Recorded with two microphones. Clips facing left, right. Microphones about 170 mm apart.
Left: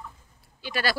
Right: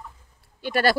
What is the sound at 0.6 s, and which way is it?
Speech, 55° right (ahead or behind).